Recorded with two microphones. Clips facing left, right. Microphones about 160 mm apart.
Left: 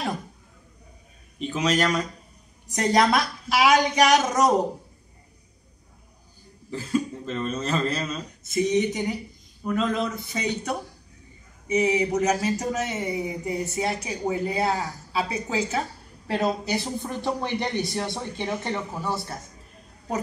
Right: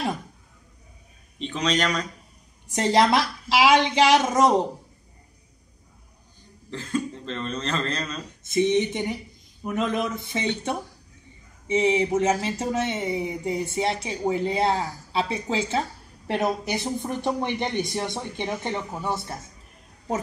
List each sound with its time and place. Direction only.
1.4 s a man's voice: 5° left (ahead or behind)
2.7 s speech: 25° right (ahead or behind)
6.7 s a man's voice: 10° left (ahead or behind)
8.5 s speech: 25° right (ahead or behind)
11.6 s speech: 25° right (ahead or behind)